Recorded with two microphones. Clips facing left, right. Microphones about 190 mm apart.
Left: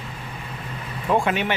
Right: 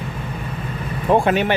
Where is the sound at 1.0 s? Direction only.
35° right (ahead or behind).